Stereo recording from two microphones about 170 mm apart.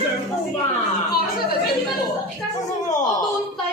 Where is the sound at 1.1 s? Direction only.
65° left (ahead or behind).